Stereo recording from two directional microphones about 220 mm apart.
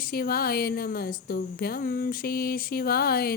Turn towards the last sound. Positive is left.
turn(degrees=45)  # may be behind; listen again after turning